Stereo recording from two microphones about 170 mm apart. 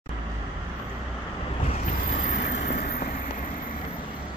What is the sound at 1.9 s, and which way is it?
Boat, 50° left (ahead or behind).